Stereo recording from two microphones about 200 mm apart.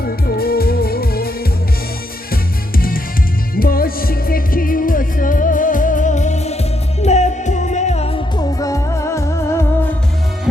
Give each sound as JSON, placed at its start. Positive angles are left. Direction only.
{"t": 0.0, "sound": "music", "side_deg": 50}
{"t": 2.3, "sound": "music", "side_deg": 45}